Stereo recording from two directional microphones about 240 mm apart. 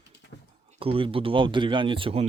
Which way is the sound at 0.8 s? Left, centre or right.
Right.